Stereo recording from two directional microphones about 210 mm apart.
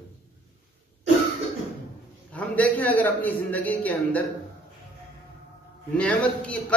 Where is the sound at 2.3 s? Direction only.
5° left (ahead or behind).